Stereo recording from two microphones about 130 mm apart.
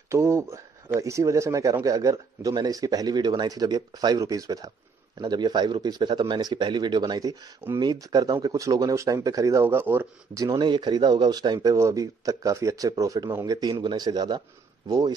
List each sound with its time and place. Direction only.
0.1 s speech: 20° right (ahead or behind)
10.4 s speech: 30° right (ahead or behind)